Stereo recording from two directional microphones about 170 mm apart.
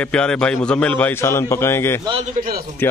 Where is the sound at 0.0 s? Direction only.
5° left (ahead or behind).